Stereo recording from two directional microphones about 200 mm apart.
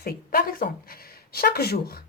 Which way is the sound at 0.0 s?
50° left (ahead or behind).